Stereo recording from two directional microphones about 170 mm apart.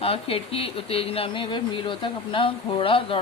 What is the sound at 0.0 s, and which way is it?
Speech, 35° left (ahead or behind).